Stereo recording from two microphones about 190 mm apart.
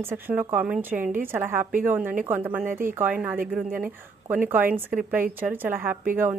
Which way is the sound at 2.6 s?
45° right (ahead or behind).